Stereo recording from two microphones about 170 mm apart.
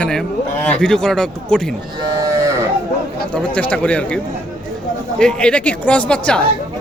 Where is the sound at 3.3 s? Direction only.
5° left (ahead or behind).